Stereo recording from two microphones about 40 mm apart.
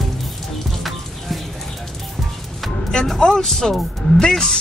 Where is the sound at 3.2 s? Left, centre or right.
Centre.